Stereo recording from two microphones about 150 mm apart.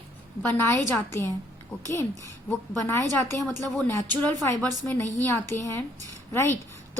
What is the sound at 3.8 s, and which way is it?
A woman's voice, 15° left (ahead or behind).